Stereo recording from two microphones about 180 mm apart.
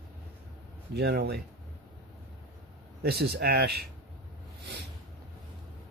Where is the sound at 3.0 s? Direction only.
60° right (ahead or behind).